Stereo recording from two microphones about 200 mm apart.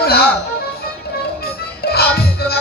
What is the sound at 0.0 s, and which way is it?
Music, 50° left (ahead or behind).